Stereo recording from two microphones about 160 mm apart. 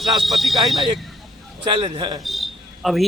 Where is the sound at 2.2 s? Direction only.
Centre (ahead or behind).